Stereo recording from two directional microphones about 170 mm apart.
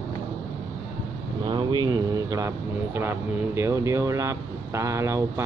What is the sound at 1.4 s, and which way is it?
Vehicle, 25° right (ahead or behind).